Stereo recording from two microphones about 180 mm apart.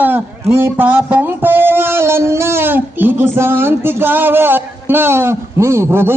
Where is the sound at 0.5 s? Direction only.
10° right (ahead or behind).